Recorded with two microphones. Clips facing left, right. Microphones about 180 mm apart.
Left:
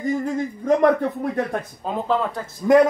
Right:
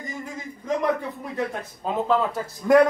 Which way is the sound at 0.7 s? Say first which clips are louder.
Left 7 dB; 60° left (ahead or behind).